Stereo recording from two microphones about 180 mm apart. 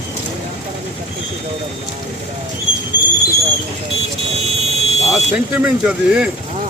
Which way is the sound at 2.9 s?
80° left.